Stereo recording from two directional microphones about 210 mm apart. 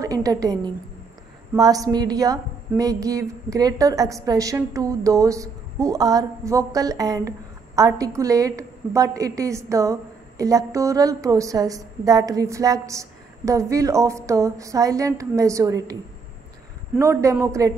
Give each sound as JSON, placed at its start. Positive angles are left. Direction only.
{"t": 0.0, "sound": "a woman's voice", "side_deg": -15}
{"t": 17.0, "sound": "a woman's voice", "side_deg": -15}